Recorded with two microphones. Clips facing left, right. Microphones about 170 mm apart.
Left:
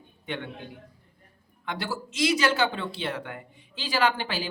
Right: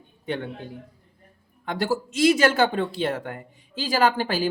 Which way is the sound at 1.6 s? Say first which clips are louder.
Right 7 dB; 45° right (ahead or behind).